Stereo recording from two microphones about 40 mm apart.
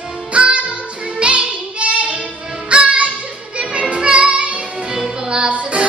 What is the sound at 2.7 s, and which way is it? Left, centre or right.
Music, right.